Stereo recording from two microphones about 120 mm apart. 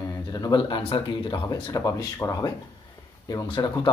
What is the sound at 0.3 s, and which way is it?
Speech, 35° left (ahead or behind).